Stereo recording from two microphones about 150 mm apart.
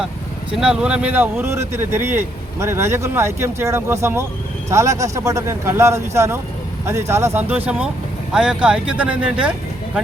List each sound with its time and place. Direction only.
0.5 s speech: 5° right (ahead or behind)